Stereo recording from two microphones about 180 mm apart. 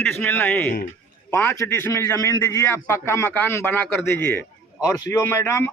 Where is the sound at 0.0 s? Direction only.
10° left (ahead or behind).